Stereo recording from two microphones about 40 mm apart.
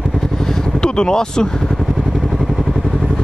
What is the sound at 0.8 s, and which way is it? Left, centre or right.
Speech, left.